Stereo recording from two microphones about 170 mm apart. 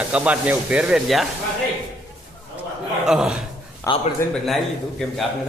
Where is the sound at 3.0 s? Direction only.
5° right (ahead or behind).